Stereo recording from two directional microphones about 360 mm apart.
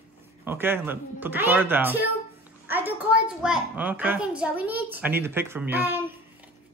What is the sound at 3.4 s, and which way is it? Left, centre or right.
A child's voice, centre.